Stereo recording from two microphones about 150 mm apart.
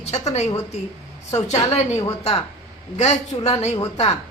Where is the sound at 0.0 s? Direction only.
45° left (ahead or behind).